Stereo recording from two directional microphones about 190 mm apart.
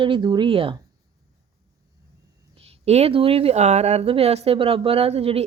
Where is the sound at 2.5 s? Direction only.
30° right (ahead or behind).